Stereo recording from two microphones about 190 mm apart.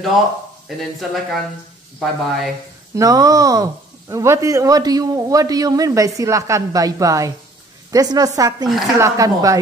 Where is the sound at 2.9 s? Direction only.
20° right (ahead or behind).